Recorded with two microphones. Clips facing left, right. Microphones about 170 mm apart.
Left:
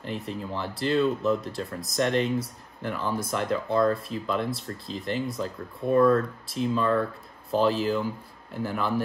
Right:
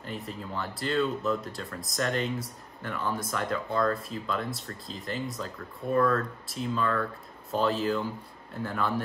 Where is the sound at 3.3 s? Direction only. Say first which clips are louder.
Left 4 dB; 25° left (ahead or behind).